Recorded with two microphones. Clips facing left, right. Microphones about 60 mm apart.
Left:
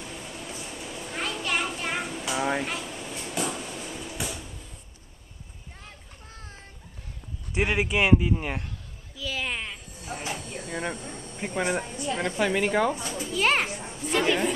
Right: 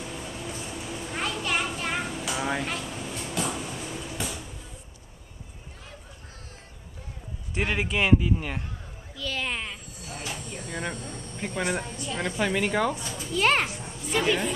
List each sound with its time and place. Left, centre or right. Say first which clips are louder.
0.0 s vehicle: right 2 dB; centre
0.7 s a sound: right 2 dB; centre
3.4 s train: right 1 dB; centre
7.5 s speech: left 2 dB; centre
9.1 s speech: even; centre
10.0 s a sound: left 3 dB; left
10.4 s speech: left 1 dB; centre
11.9 s a woman's voice: left 4 dB; left
12.2 s speech: left 1 dB; centre
12.9 s a child's voice: left 3 dB; left
13.3 s speech: right 1 dB; centre
13.7 s children playing: left 2 dB; left
14.1 s speech: left 1 dB; centre